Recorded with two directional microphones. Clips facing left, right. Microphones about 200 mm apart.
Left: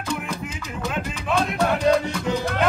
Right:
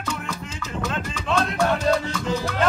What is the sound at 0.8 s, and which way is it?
Music, 10° left (ahead or behind).